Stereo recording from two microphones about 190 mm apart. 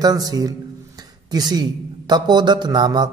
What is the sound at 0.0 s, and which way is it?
A man's voice, 20° right (ahead or behind).